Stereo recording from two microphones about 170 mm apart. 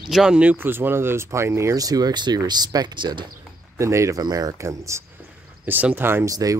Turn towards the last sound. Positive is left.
turn(degrees=-20)  # may be behind; listen again after turning